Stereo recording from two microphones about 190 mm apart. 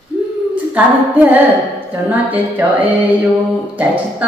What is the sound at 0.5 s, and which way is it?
A woman's voice, 10° right (ahead or behind).